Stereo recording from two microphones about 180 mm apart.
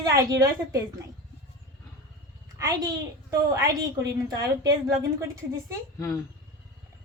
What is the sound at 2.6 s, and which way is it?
Speech, 20° right (ahead or behind).